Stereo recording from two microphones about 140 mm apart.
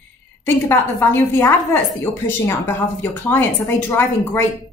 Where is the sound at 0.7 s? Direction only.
15° left (ahead or behind).